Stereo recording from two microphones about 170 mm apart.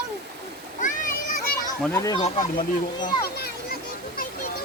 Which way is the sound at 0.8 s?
50° left (ahead or behind).